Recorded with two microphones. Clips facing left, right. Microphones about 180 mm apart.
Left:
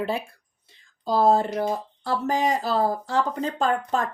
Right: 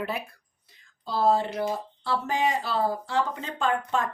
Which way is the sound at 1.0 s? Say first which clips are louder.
Left 4 dB; 45° left (ahead or behind).